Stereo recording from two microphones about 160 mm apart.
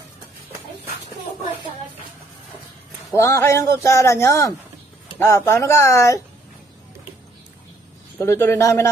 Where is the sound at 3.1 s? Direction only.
20° left (ahead or behind).